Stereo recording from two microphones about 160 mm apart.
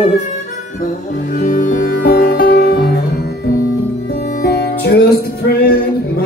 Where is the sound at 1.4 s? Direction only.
55° left (ahead or behind); by 3.3 s 75° left (ahead or behind).